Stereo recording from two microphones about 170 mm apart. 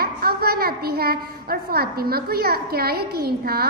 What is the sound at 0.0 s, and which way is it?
A child's voice, 60° right (ahead or behind).